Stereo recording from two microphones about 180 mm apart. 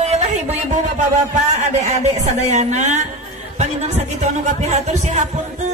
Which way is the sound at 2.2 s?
40° right (ahead or behind).